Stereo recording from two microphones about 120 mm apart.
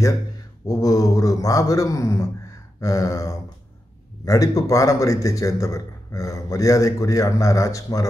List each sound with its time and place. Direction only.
0.7 s a man's voice: 30° left (ahead or behind)